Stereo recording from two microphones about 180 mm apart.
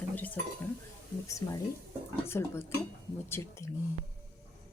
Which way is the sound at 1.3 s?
20° left (ahead or behind).